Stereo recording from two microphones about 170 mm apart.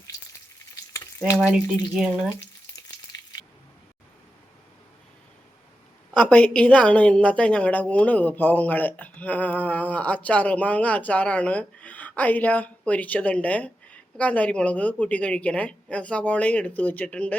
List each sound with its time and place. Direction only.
1.4 s speech: 10° right (ahead or behind)
6.1 s a woman's voice: 5° left (ahead or behind)